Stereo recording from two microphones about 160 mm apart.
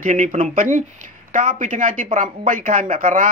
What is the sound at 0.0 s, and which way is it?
Speech, 55° right (ahead or behind).